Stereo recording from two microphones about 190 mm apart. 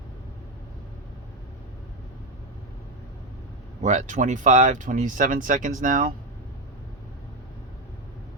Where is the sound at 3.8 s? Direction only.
40° right (ahead or behind).